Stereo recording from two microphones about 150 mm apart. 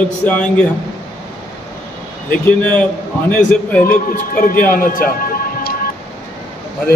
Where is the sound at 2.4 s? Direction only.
10° left (ahead or behind).